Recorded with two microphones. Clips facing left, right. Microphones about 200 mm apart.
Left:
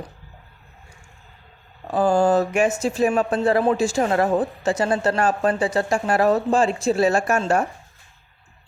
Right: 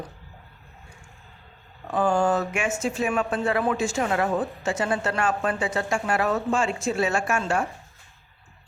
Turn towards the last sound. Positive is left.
turn(degrees=40)  # may be behind; listen again after turning